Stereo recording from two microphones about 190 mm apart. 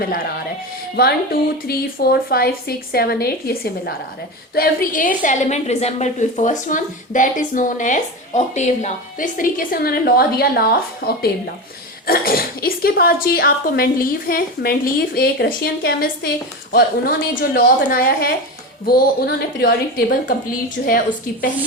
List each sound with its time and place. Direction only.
0.9 s a woman's voice: 55° left (ahead or behind)